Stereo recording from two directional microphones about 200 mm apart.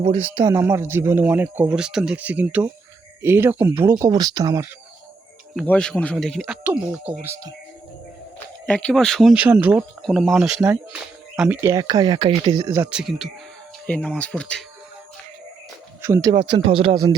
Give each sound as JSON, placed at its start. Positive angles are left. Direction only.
{"t": 0.0, "sound": "speech", "side_deg": -30}
{"t": 0.5, "sound": "speech", "side_deg": -15}
{"t": 5.6, "sound": "speech", "side_deg": 5}
{"t": 8.6, "sound": "speech", "side_deg": 5}
{"t": 12.9, "sound": "speech", "side_deg": -5}
{"t": 16.0, "sound": "speech", "side_deg": -15}
{"t": 16.3, "sound": "speech", "side_deg": -25}